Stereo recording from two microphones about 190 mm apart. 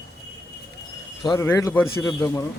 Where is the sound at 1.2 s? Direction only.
15° left (ahead or behind).